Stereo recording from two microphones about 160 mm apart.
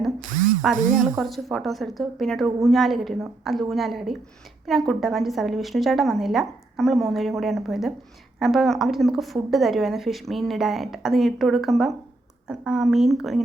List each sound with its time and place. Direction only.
0.3 s ratchet: 55° right (ahead or behind)
0.8 s speech: 55° right (ahead or behind)
1.0 s a woman's voice: centre (ahead or behind)